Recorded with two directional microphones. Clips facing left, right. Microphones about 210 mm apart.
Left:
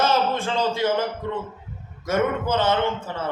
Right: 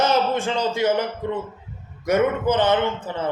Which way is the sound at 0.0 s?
15° right (ahead or behind).